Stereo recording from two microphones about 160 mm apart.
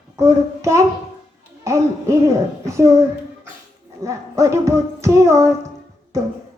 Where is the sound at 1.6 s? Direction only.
20° right (ahead or behind).